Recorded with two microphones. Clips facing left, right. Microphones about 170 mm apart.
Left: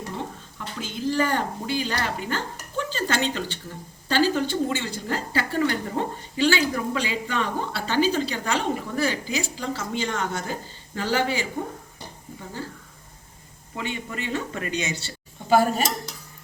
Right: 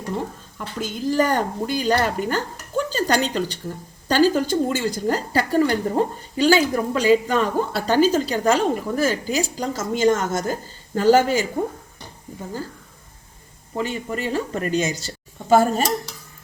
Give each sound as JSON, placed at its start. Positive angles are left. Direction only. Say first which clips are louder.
{"t": 0.6, "sound": "a woman's voice", "louder": "right 3 dB", "side_deg": -45}
{"t": 13.7, "sound": "a woman's voice", "louder": "right 6 dB", "side_deg": -40}